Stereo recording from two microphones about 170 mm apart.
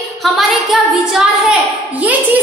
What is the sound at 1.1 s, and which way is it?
Speech, 5° right (ahead or behind).